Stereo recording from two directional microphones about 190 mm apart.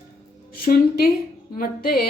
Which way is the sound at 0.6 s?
50° left (ahead or behind).